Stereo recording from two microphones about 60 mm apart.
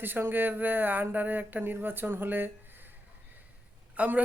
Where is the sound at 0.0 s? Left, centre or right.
Right.